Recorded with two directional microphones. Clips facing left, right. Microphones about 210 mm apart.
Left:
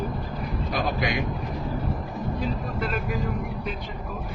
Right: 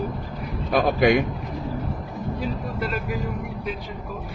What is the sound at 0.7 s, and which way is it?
Speech, 55° right (ahead or behind).